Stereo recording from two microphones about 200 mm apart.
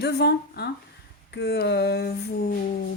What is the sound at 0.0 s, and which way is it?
Speech, 55° left (ahead or behind).